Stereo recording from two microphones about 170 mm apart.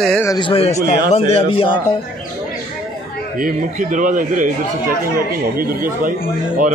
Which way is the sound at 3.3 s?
50° right (ahead or behind).